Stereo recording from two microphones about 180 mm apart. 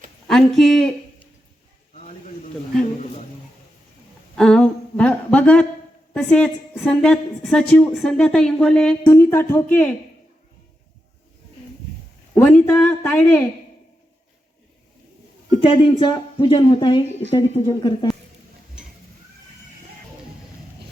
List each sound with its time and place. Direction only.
0.3 s a woman's voice: centre (ahead or behind)
4.4 s a sound: 5° left (ahead or behind)
6.1 s a woman's voice: 5° left (ahead or behind)
12.3 s a man's voice: 10° left (ahead or behind)
15.7 s speech: 30° left (ahead or behind)